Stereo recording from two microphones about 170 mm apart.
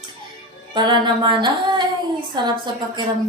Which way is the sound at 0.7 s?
25° right (ahead or behind).